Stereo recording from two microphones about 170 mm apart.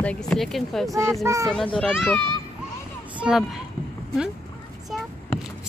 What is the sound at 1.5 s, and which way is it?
Speech, 5° left (ahead or behind).